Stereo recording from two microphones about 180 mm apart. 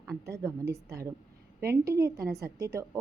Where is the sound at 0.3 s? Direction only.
15° right (ahead or behind).